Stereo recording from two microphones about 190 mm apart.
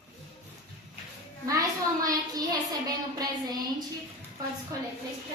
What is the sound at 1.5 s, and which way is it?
Speech, 20° right (ahead or behind).